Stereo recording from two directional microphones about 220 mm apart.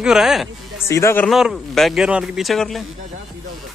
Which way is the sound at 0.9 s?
15° left (ahead or behind).